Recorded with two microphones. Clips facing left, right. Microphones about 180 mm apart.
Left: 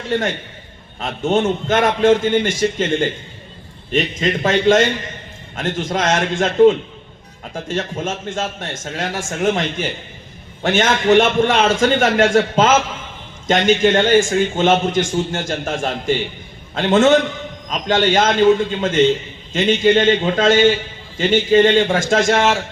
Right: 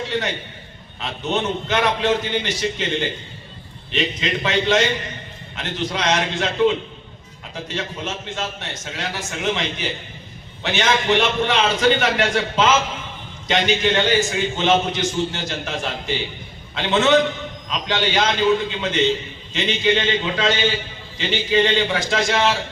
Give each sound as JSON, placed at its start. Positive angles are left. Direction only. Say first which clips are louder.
{"t": 0.1, "sound": "a man's voice", "louder": "left 4 dB", "side_deg": 50}